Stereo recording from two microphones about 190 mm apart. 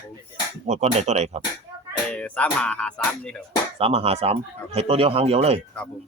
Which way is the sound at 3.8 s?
30° right (ahead or behind).